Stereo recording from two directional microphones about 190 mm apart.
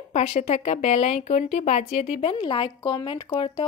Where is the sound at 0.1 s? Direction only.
35° left (ahead or behind).